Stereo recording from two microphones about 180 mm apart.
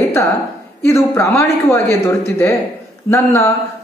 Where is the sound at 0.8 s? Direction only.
15° left (ahead or behind).